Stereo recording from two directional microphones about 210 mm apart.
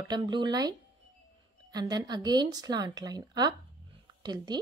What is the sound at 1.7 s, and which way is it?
A woman's voice, 20° right (ahead or behind).